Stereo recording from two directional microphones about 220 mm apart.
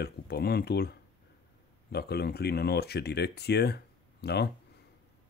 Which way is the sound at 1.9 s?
45° left (ahead or behind).